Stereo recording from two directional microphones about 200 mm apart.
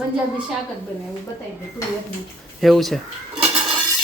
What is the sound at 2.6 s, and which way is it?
Speech, centre (ahead or behind).